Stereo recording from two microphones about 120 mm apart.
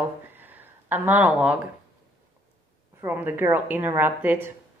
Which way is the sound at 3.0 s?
15° right (ahead or behind).